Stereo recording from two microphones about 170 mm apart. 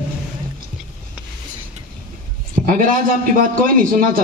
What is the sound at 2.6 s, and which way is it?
A man's voice, 55° right (ahead or behind).